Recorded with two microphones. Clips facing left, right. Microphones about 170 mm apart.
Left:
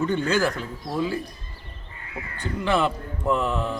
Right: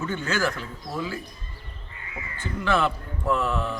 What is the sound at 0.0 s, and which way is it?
A man's voice, 15° left (ahead or behind).